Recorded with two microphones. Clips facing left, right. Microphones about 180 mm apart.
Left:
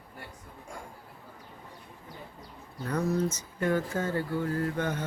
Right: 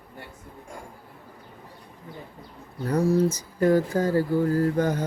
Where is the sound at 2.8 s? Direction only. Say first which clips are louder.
Right 7 dB; 30° right (ahead or behind).